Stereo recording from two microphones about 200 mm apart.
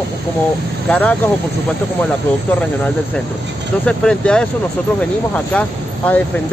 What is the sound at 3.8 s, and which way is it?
Speech, 5° left (ahead or behind).